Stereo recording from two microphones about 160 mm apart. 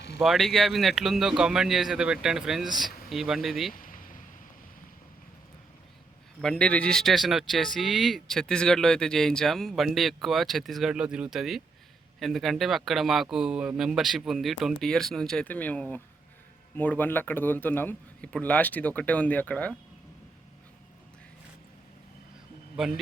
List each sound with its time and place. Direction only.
0.2 s speech: centre (ahead or behind)
3.8 s a sound: 60° left (ahead or behind)
6.4 s a man's voice: 5° left (ahead or behind)